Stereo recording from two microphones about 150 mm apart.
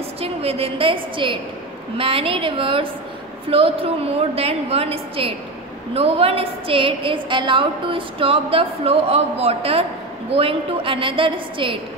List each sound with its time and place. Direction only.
0.2 s a woman's voice: 40° right (ahead or behind)